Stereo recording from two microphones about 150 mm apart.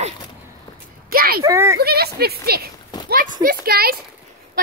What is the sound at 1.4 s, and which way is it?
Speech, 20° right (ahead or behind).